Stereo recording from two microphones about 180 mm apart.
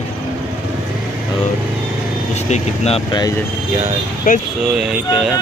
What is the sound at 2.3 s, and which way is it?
Speech, 35° left (ahead or behind).